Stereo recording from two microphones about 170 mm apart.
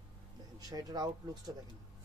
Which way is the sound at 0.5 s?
20° right (ahead or behind).